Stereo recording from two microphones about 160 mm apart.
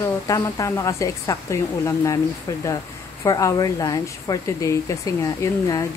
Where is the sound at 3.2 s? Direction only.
20° left (ahead or behind).